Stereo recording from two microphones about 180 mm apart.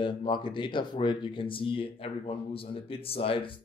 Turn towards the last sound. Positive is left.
turn(degrees=30)  # may be behind; listen again after turning